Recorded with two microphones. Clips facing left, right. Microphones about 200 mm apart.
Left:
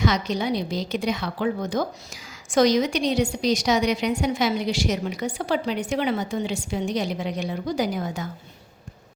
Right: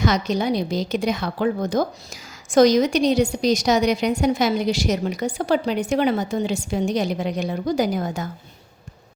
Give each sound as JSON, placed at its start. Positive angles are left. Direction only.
{"t": 0.0, "sound": "a woman's voice", "side_deg": -45}